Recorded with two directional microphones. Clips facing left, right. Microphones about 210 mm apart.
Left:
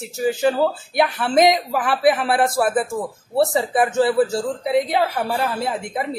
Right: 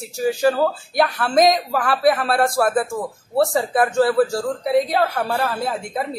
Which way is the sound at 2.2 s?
20° left (ahead or behind).